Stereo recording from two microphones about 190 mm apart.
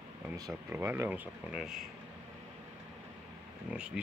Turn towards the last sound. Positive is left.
turn(degrees=-5)  # may be behind; listen again after turning